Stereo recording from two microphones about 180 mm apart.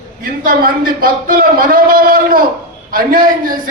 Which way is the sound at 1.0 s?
50° right (ahead or behind).